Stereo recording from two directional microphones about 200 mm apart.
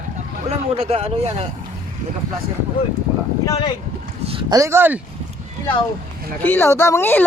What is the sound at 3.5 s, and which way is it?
Speech, 20° left (ahead or behind).